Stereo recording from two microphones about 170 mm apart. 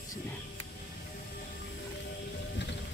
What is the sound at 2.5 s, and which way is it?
Music, 90° left.